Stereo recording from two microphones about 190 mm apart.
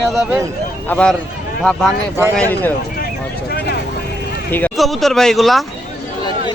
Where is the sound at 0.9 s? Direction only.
5° left (ahead or behind).